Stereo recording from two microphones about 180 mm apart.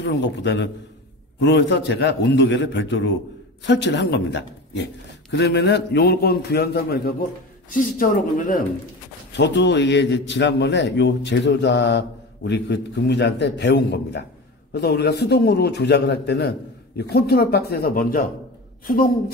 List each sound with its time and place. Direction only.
0.0 s a man's voice: 80° left; by 7.2 s 60° left (ahead or behind)
7.7 s speech: 45° left (ahead or behind)
9.3 s a man's voice: 75° left (ahead or behind); by 19.3 s 50° left (ahead or behind)